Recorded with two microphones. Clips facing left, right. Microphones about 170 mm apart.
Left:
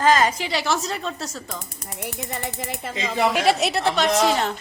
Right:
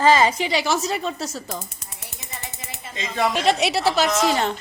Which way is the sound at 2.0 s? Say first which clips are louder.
Left 9 dB; 60° left (ahead or behind).